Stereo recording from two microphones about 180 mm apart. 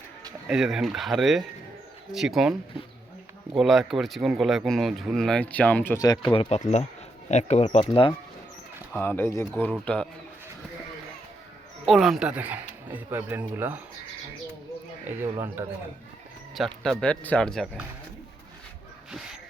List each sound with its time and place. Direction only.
0.4 s speech: 5° right (ahead or behind)
3.6 s speech: centre (ahead or behind); by 6.3 s 20° left (ahead or behind)
6.3 s speech: 30° left (ahead or behind)
6.6 s speech: 40° left (ahead or behind)
8.9 s speech: 10° left (ahead or behind)
11.9 s speech: centre (ahead or behind)
15.0 s speech: 10° right (ahead or behind)
16.8 s speech: 5° left (ahead or behind)